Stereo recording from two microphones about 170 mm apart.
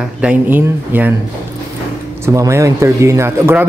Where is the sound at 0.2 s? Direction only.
10° right (ahead or behind).